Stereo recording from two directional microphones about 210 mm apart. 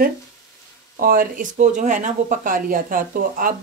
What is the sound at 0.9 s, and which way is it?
Speech, 40° right (ahead or behind).